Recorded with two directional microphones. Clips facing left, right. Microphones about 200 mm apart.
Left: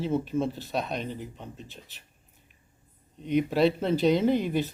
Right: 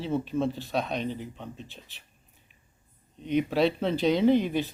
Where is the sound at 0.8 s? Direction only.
5° left (ahead or behind).